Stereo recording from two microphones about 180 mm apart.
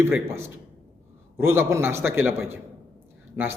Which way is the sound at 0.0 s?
15° right (ahead or behind).